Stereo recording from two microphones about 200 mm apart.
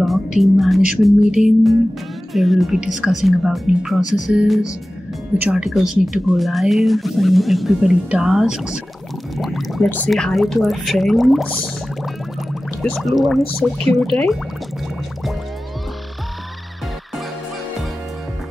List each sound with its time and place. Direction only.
0.0 s speech: centre (ahead or behind)
4.0 s music: 35° left (ahead or behind)
4.3 s speech: 5° right (ahead or behind)